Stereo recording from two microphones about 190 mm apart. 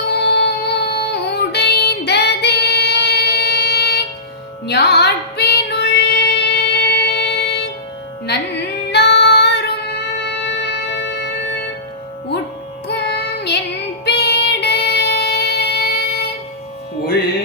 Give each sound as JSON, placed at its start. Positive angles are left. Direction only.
{"t": 0.1, "sound": "music", "side_deg": 60}
{"t": 4.6, "sound": "female singing", "side_deg": 60}
{"t": 12.9, "sound": "music", "side_deg": 60}
{"t": 14.0, "sound": "child singing", "side_deg": 60}